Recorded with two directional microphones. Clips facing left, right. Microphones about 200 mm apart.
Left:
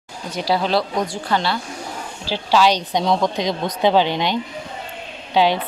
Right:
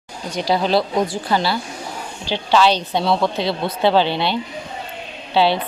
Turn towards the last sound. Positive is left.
turn(degrees=15)  # may be behind; listen again after turning